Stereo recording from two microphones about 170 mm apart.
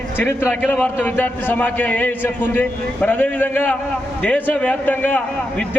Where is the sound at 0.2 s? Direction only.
15° left (ahead or behind).